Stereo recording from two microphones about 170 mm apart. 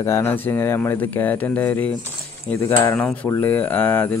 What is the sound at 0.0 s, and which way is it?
Speech, 15° left (ahead or behind).